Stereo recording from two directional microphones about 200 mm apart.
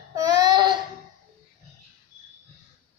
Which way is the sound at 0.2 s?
20° right (ahead or behind).